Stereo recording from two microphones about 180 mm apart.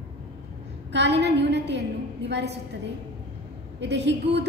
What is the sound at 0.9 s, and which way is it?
A woman's voice, 70° right (ahead or behind).